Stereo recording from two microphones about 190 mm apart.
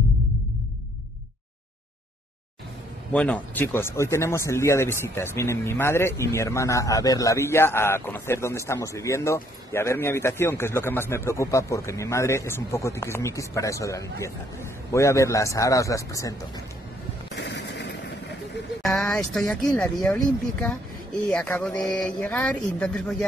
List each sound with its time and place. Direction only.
3.1 s speech: 5° left (ahead or behind)
17.4 s a sound: 65° left (ahead or behind)
18.9 s speech: centre (ahead or behind)
21.3 s speech: 10° left (ahead or behind)